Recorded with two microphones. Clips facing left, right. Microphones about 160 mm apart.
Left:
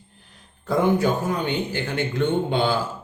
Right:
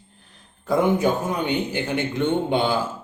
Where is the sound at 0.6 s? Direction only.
20° right (ahead or behind).